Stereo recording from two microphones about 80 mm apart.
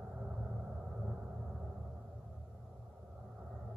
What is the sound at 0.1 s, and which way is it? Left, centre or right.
Vehicle, centre.